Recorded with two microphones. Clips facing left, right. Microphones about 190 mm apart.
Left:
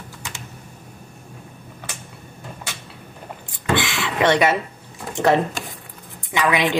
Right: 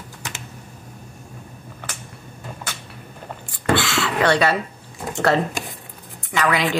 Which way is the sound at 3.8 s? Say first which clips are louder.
Right 1 dB; 20° left (ahead or behind).